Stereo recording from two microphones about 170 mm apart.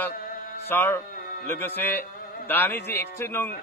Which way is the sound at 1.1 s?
60° left (ahead or behind).